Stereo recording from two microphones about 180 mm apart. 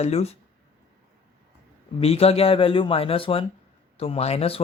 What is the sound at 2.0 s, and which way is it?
Speech, 35° left (ahead or behind).